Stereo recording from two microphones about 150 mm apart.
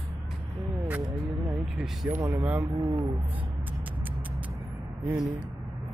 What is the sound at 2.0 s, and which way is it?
Speech, 15° right (ahead or behind).